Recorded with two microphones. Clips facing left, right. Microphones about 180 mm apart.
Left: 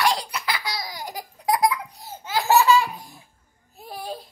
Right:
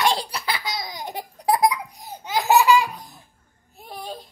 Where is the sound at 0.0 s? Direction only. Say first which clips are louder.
Right 1 dB; 30° right (ahead or behind).